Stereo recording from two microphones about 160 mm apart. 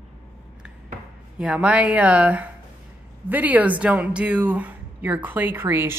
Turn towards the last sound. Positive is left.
turn(degrees=-15)  # may be behind; listen again after turning